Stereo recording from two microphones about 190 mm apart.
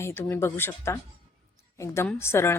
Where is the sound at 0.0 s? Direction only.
10° left (ahead or behind).